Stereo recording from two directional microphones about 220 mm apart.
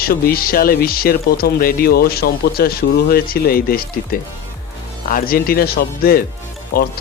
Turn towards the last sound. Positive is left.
turn(degrees=40)  # may be behind; listen again after turning